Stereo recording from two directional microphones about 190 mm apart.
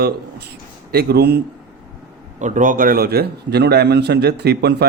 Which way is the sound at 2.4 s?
40° right (ahead or behind).